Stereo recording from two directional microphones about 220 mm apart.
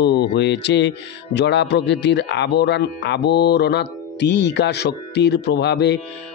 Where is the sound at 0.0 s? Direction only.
50° left (ahead or behind).